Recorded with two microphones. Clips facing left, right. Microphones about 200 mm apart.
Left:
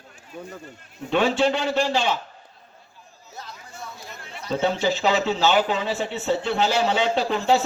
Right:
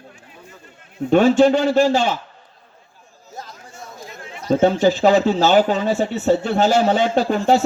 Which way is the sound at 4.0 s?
45° right (ahead or behind).